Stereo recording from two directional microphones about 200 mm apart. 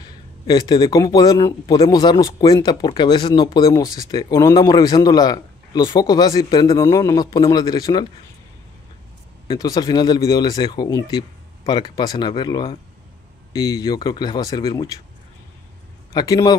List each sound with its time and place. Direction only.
0.5 s a man's voice: 20° left (ahead or behind)
9.5 s a man's voice: 20° left (ahead or behind)
16.1 s a man's voice: 15° left (ahead or behind)